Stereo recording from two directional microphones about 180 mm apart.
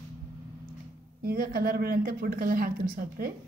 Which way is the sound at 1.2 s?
55° right (ahead or behind).